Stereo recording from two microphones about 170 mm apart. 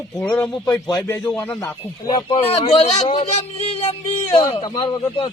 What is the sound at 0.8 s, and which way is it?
Speech, 25° left (ahead or behind).